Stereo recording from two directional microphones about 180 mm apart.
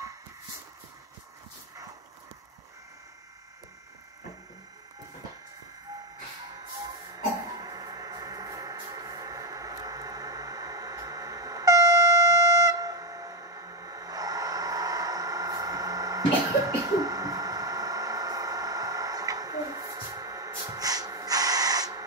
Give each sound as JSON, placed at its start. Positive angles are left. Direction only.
{"t": 7.5, "sound": "music", "side_deg": -20}